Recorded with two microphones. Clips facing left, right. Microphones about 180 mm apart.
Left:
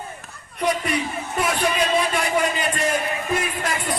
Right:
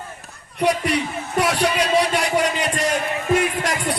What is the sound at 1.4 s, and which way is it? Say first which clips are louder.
A man's voice: right 3 dB; 75° right (ahead or behind).